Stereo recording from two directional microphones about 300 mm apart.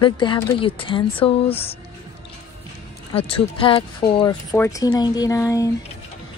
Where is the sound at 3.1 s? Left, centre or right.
Centre.